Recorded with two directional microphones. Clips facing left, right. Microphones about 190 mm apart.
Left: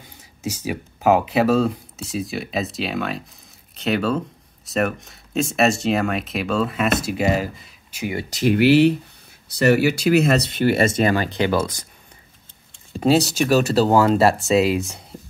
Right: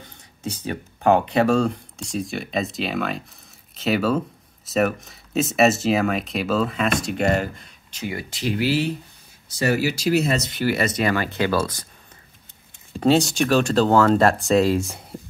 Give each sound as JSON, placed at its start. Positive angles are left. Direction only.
{"t": 0.2, "sound": "speech", "side_deg": 10}
{"t": 8.3, "sound": "speech", "side_deg": 45}
{"t": 8.5, "sound": "speech", "side_deg": 65}
{"t": 10.4, "sound": "speech", "side_deg": 25}
{"t": 12.9, "sound": "speech", "side_deg": 10}